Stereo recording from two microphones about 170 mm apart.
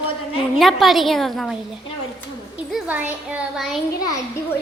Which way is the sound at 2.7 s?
10° right (ahead or behind).